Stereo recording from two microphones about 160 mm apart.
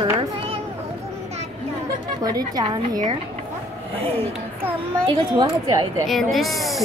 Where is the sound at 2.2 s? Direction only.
25° right (ahead or behind).